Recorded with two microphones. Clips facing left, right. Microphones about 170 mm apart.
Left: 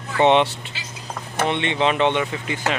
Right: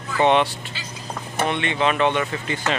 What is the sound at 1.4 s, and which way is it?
Speech, 25° left (ahead or behind).